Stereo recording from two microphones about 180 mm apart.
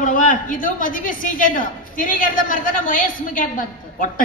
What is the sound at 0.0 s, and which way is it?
A woman's voice, 45° left (ahead or behind).